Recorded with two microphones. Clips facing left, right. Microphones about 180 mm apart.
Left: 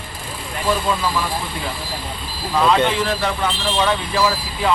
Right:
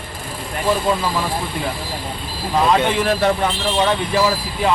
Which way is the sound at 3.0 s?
55° right (ahead or behind).